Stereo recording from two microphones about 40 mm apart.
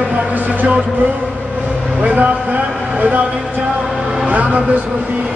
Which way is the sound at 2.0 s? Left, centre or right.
Right.